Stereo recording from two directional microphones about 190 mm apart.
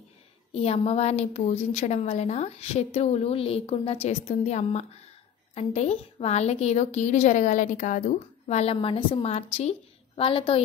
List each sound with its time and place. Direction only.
0.5 s a woman's voice: 30° left (ahead or behind)